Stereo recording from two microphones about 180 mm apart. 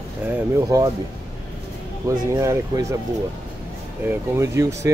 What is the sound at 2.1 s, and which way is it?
Speech, 15° right (ahead or behind).